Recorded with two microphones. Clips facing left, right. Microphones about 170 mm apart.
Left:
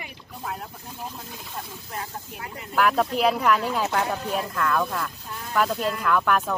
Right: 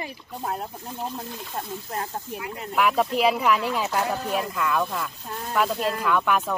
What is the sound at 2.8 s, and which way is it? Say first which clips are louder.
Speech: even; centre (ahead or behind).